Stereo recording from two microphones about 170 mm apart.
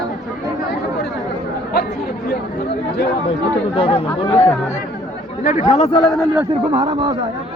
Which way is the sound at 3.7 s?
30° left (ahead or behind).